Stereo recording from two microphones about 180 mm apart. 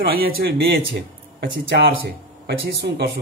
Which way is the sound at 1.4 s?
80° right.